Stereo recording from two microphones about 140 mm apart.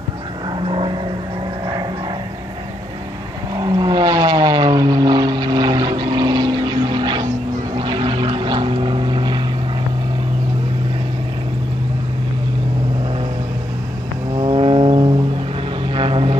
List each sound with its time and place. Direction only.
0.6 s vehicle: 40° right (ahead or behind)
3.5 s vehicle: 30° right (ahead or behind)
14.3 s vehicle: 35° right (ahead or behind)